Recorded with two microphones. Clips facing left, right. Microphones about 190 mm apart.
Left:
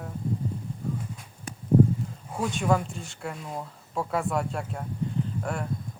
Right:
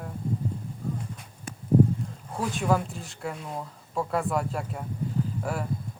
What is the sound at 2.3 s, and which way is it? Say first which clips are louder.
Speech: even; centre (ahead or behind).